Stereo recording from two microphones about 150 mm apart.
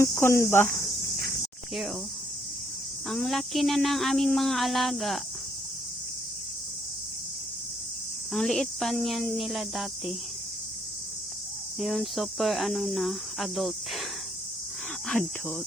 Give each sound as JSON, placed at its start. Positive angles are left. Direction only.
{"t": 0.0, "sound": "cricket", "side_deg": 15}
{"t": 3.1, "sound": "speech", "side_deg": 0}
{"t": 8.3, "sound": "speech", "side_deg": 5}
{"t": 11.8, "sound": "speech", "side_deg": 0}
{"t": 15.0, "sound": "speech", "side_deg": 5}